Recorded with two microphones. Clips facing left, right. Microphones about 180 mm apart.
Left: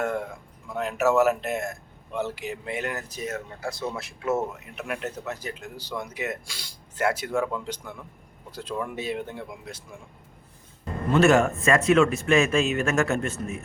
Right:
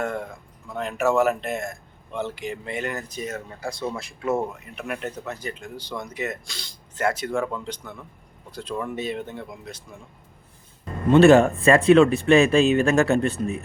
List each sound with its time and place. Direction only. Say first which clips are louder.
0.7 s speech: even; 5° left (ahead or behind)
11.1 s speech: right 6 dB; 30° right (ahead or behind)